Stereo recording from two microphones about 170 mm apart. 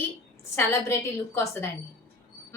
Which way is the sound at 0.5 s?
15° left (ahead or behind).